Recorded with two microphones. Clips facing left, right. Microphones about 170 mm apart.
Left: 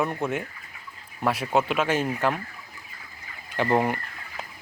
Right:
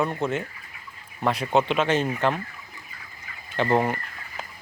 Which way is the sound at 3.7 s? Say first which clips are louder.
Even; 10° left (ahead or behind).